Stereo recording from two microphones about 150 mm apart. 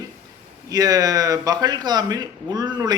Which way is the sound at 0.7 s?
25° right (ahead or behind).